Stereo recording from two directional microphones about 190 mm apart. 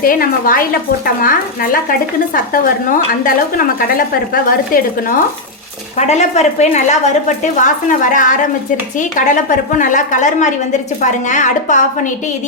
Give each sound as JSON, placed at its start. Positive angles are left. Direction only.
{"t": 0.0, "sound": "speech", "side_deg": 50}
{"t": 6.0, "sound": "a woman's voice", "side_deg": 35}